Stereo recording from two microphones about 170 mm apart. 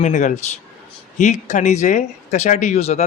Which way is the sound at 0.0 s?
45° left (ahead or behind).